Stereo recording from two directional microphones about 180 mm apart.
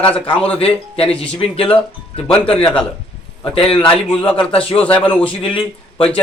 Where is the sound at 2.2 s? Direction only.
5° left (ahead or behind).